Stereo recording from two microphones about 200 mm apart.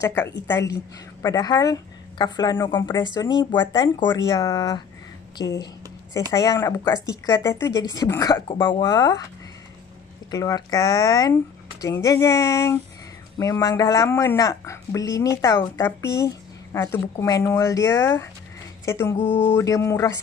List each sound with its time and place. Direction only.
0.0 s speech: 10° left (ahead or behind)
10.3 s speech: 20° left (ahead or behind)